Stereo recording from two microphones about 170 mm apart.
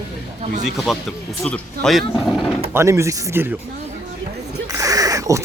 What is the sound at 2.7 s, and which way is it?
Speech, 15° right (ahead or behind).